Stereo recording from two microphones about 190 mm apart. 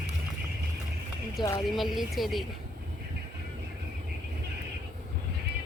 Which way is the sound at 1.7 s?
Centre (ahead or behind).